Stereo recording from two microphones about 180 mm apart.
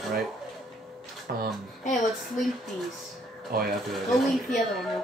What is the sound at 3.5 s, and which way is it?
Speech, 55° right (ahead or behind).